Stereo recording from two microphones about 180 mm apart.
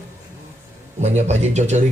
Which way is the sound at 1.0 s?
40° right (ahead or behind).